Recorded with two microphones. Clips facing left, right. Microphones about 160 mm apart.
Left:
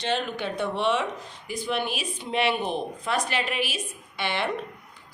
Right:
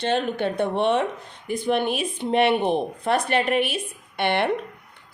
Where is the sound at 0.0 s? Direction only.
55° right (ahead or behind).